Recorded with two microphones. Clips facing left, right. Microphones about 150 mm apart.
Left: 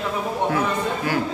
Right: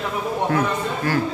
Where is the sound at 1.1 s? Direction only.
15° left (ahead or behind).